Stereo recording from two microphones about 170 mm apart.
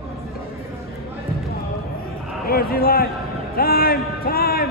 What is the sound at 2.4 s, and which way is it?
A man's voice, 60° left (ahead or behind).